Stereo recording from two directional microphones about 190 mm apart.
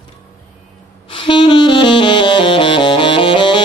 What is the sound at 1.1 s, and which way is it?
Saxophone, 25° left (ahead or behind).